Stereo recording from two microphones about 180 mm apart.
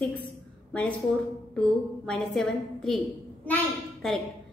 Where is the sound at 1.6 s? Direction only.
5° left (ahead or behind).